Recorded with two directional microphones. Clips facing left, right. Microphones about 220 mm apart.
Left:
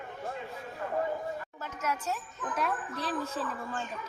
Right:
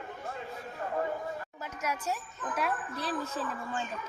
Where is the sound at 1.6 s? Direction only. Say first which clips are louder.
Left 1 dB; 15° right (ahead or behind).